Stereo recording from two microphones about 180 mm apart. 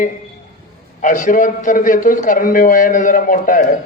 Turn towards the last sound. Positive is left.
turn(degrees=45)  # may be behind; listen again after turning